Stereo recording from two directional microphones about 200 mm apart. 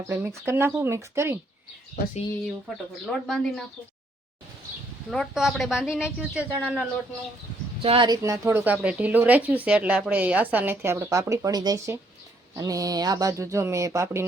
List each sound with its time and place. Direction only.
0.1 s a woman's voice: 10° right (ahead or behind)
3.1 s a woman's voice: centre (ahead or behind)
5.1 s a woman's voice: centre (ahead or behind)
7.8 s a woman's voice: 25° right (ahead or behind)